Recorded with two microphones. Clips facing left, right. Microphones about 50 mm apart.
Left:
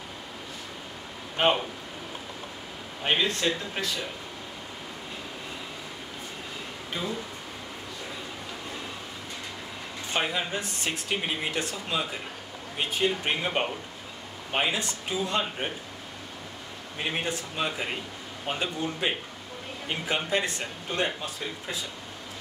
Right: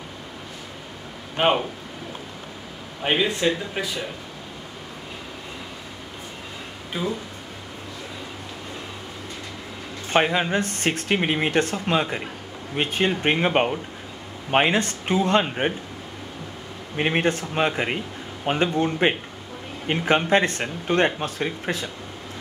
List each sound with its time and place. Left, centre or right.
1.3 s speech: centre
3.0 s speech: centre
6.9 s speech: centre
10.1 s speech: right
16.9 s speech: right